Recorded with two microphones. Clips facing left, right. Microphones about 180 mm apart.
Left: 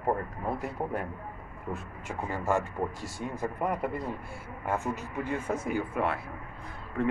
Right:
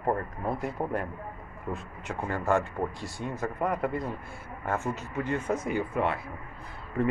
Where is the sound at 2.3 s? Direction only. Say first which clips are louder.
Right 2 dB; 5° left (ahead or behind).